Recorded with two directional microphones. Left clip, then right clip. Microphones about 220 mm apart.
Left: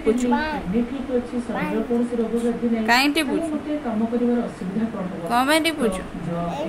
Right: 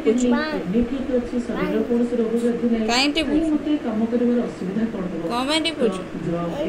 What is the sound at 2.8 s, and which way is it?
Speech, 30° left (ahead or behind).